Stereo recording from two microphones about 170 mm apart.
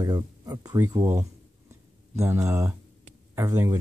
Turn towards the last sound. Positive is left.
turn(degrees=-20)  # may be behind; listen again after turning